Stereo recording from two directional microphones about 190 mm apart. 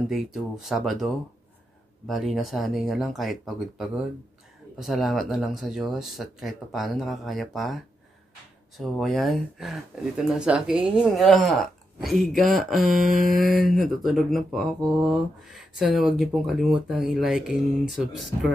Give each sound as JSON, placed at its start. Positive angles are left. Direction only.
{"t": 0.1, "sound": "speech", "side_deg": 0}
{"t": 13.0, "sound": "mantra", "side_deg": -45}
{"t": 13.3, "sound": "speech", "side_deg": 0}